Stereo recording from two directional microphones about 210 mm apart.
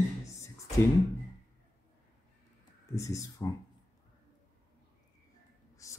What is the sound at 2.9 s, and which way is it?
Speech, 15° left (ahead or behind).